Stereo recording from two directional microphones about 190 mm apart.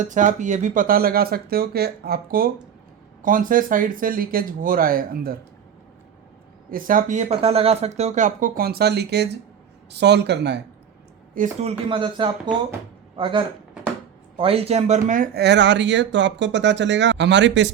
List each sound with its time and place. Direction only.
0.0 s speech: 40° right (ahead or behind)
6.7 s speech: 45° right (ahead or behind); by 10.6 s 65° right (ahead or behind)
11.3 s speech: 35° right (ahead or behind)
15.4 s speech: 65° right (ahead or behind)